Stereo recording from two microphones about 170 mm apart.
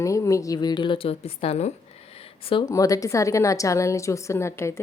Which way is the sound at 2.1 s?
35° left (ahead or behind).